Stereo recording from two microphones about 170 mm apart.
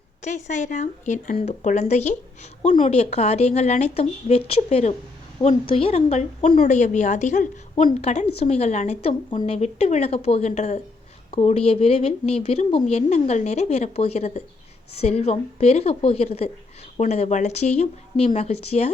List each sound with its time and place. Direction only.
0.2 s speech: 45° left (ahead or behind)